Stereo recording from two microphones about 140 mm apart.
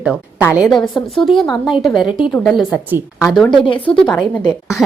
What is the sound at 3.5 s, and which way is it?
Speech, 35° left (ahead or behind).